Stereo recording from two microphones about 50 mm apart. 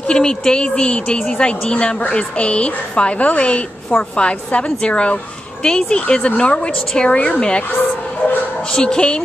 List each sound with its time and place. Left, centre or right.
0.1 s speech: centre
8.7 s speech: centre